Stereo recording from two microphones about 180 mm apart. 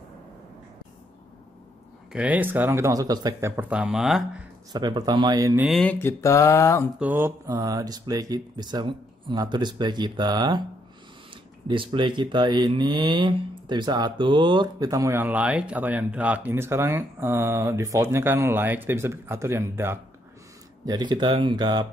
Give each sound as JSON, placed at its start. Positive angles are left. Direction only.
{"t": 2.1, "sound": "speech", "side_deg": -10}
{"t": 4.7, "sound": "speech", "side_deg": -20}
{"t": 5.6, "sound": "speech", "side_deg": 0}
{"t": 5.9, "sound": "a sound", "side_deg": 15}
{"t": 7.0, "sound": "speech", "side_deg": -10}
{"t": 11.6, "sound": "speech", "side_deg": -30}
{"t": 20.8, "sound": "speech", "side_deg": -25}